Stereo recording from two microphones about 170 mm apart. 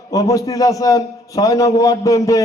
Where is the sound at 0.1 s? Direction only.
20° left (ahead or behind).